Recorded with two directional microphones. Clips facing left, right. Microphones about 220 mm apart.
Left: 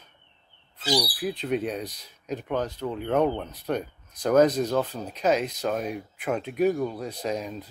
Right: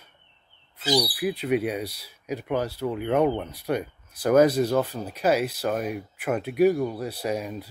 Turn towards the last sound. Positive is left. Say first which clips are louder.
# right 1 dB
turn(degrees=-10)  # may be behind; listen again after turning